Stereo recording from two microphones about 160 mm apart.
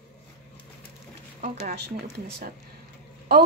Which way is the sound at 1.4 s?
55° right (ahead or behind).